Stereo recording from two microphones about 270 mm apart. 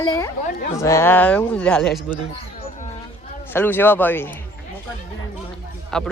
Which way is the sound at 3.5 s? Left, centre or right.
Centre.